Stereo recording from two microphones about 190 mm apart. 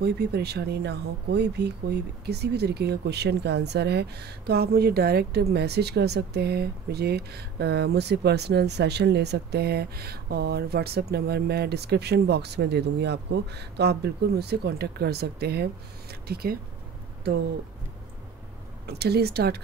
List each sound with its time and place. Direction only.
0.0 s speech: 60° right (ahead or behind)
18.9 s speech: 60° right (ahead or behind)